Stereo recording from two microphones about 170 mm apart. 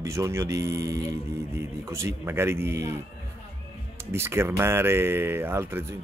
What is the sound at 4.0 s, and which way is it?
Speech, 15° right (ahead or behind).